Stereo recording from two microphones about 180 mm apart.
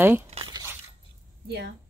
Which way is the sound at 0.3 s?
30° right (ahead or behind).